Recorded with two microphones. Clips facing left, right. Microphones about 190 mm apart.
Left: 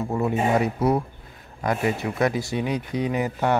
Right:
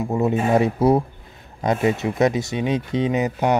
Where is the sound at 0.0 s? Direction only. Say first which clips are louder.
Right 3 dB; 20° right (ahead or behind).